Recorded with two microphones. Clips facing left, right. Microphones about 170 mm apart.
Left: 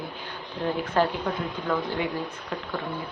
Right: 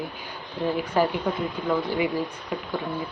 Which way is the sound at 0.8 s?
10° right (ahead or behind).